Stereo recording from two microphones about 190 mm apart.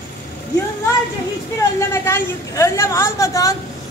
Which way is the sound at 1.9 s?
15° left (ahead or behind).